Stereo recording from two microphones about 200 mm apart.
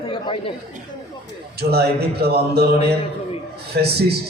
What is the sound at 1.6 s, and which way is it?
A man's voice, 50° right (ahead or behind).